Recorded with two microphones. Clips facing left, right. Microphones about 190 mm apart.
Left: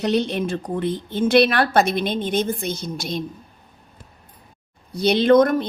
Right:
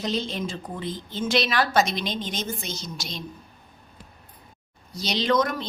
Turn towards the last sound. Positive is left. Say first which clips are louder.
# left 9 dB
turn(degrees=55)  # may be behind; listen again after turning